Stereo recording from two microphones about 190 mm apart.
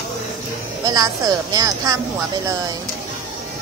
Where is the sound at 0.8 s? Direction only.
20° right (ahead or behind).